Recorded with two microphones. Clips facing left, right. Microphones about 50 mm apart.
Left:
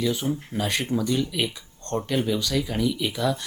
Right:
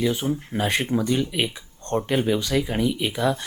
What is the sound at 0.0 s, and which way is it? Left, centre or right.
Speech, right.